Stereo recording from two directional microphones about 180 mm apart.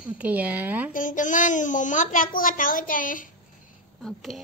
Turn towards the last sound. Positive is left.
turn(degrees=0)  # may be behind; listen again after turning